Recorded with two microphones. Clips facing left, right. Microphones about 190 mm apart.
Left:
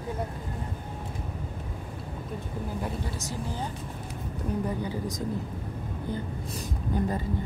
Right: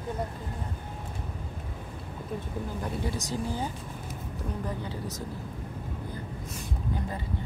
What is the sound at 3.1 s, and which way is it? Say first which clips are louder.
Speech: right 2 dB; 15° right (ahead or behind).